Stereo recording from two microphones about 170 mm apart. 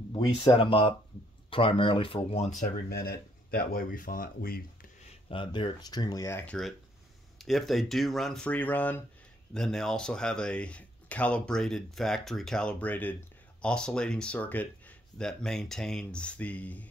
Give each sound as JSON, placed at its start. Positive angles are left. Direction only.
{"t": 0.1, "sound": "speech", "side_deg": 30}
{"t": 2.6, "sound": "speech", "side_deg": 65}
{"t": 5.3, "sound": "speech", "side_deg": 30}